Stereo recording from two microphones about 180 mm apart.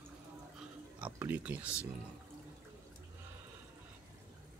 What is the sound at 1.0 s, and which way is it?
Speech, 10° right (ahead or behind).